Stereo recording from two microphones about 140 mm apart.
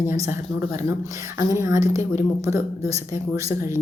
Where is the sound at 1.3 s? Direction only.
20° right (ahead or behind).